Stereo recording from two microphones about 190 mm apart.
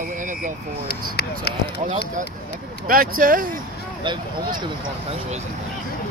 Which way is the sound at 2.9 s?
50° right (ahead or behind).